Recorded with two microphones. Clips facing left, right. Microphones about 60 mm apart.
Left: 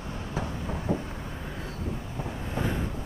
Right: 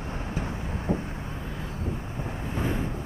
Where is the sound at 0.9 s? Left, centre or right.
Right.